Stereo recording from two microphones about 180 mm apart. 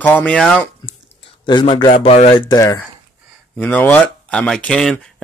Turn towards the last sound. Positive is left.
turn(degrees=5)  # may be behind; listen again after turning